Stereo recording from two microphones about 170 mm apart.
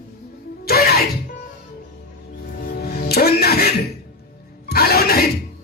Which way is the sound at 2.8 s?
65° left (ahead or behind).